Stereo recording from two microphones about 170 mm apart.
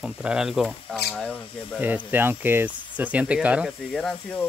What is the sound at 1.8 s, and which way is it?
Speech, 10° right (ahead or behind).